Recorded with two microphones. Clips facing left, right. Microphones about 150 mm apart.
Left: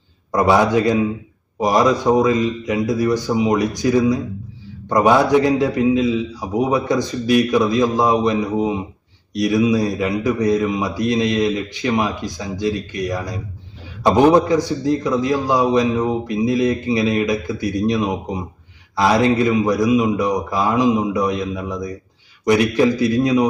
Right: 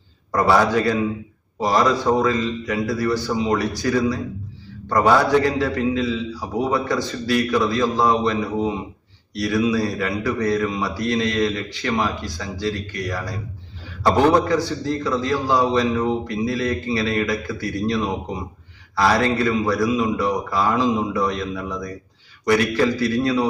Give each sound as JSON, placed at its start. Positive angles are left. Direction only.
{"t": 0.3, "sound": "a man's voice", "side_deg": 20}